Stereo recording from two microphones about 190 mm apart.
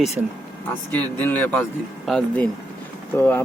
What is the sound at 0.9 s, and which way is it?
Speech, 10° left (ahead or behind).